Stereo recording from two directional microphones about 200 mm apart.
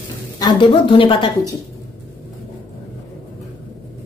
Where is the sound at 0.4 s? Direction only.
20° left (ahead or behind).